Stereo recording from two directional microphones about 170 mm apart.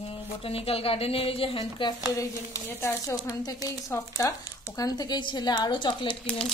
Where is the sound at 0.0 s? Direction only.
35° left (ahead or behind).